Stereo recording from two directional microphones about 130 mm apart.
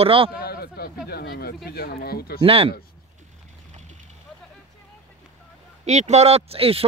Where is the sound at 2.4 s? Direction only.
45° right (ahead or behind).